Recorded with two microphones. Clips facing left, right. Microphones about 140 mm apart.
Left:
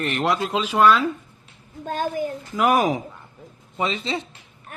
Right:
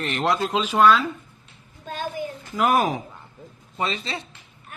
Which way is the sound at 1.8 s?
50° left (ahead or behind).